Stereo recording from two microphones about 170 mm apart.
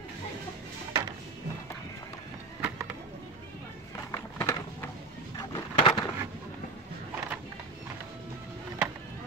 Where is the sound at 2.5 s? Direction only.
10° right (ahead or behind).